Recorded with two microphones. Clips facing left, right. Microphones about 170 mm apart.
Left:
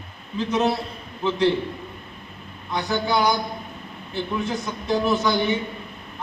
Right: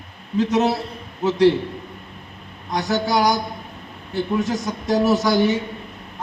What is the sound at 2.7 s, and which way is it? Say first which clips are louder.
Speech: right 2 dB; 40° right (ahead or behind).